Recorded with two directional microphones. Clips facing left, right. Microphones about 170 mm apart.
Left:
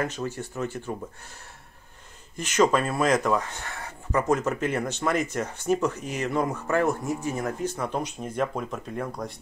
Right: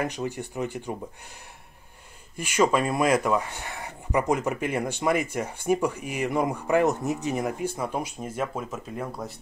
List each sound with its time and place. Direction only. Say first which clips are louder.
0.0 s speech: even; 15° right (ahead or behind)
2.3 s speech: left 1 dB; 10° right (ahead or behind)